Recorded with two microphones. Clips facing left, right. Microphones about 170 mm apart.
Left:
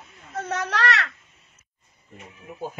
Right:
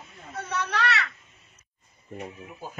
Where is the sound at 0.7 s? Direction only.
90° left.